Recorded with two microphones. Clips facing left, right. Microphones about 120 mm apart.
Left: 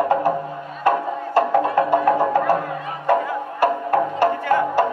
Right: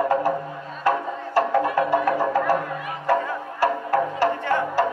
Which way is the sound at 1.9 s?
20° left (ahead or behind).